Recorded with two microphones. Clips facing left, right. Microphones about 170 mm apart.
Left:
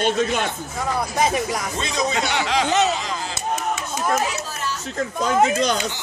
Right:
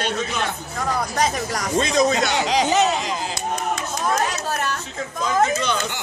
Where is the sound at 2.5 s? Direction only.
20° right (ahead or behind).